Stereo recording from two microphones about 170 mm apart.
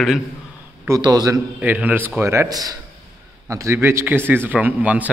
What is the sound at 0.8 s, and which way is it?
Speech, 20° right (ahead or behind).